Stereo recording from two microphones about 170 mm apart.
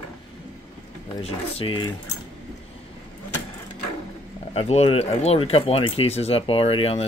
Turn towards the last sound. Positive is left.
turn(degrees=35)  # may be behind; listen again after turning